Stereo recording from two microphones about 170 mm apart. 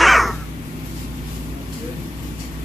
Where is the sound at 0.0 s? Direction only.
Centre (ahead or behind).